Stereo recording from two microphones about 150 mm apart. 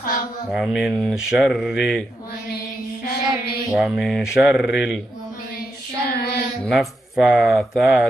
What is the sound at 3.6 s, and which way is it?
Speech, centre (ahead or behind).